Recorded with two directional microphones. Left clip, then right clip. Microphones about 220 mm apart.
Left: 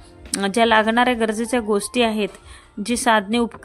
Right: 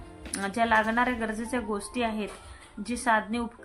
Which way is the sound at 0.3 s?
45° left (ahead or behind).